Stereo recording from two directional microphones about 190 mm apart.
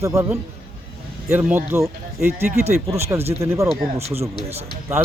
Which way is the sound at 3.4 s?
15° right (ahead or behind).